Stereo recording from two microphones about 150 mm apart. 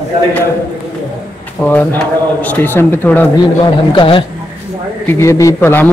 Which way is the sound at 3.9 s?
35° left (ahead or behind).